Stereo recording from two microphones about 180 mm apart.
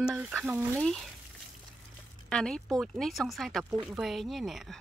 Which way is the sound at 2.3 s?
5° left (ahead or behind).